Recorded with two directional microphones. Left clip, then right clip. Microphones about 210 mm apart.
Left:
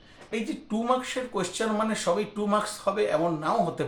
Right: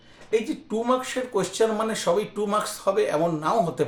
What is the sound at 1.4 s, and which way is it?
Speech, 45° right (ahead or behind).